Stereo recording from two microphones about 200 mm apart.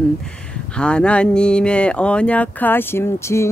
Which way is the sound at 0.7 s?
5° left (ahead or behind).